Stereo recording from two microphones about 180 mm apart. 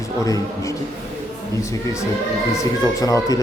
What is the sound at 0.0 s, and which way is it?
A man's voice, 20° left (ahead or behind).